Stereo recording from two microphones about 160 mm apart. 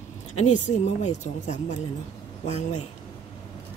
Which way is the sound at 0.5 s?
50° left (ahead or behind).